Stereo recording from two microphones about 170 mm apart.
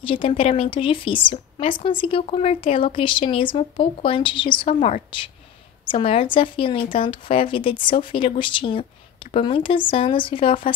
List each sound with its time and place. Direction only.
0.0 s speech: 30° left (ahead or behind)
4.7 s a woman's voice: 45° left (ahead or behind)
5.9 s speech: 30° left (ahead or behind)